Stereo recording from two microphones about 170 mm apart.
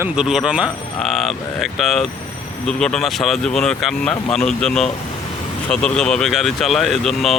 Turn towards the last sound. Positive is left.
turn(degrees=0)  # may be behind; listen again after turning